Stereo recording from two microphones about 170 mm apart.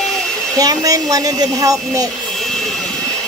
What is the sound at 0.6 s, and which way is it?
Speech, 20° right (ahead or behind).